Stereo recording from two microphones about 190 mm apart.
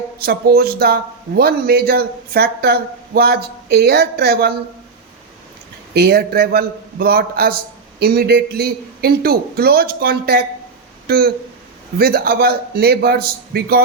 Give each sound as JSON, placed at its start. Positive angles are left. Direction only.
{"t": 0.3, "sound": "a man's voice", "side_deg": -55}
{"t": 5.9, "sound": "a man's voice", "side_deg": -55}